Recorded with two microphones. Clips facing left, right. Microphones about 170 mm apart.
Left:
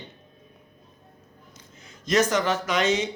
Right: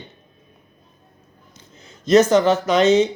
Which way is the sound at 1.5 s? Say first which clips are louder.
Right 6 dB; 30° right (ahead or behind).